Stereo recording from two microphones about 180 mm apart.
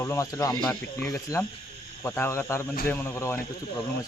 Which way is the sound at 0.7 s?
5° left (ahead or behind).